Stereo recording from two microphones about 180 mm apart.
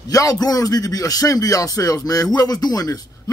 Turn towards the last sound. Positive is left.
turn(degrees=20)  # may be behind; listen again after turning